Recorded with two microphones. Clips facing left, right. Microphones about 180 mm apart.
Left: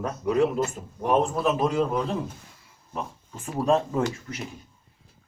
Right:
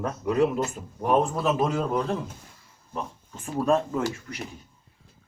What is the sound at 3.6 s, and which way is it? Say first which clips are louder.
Speech: left 1 dB; 25° left (ahead or behind).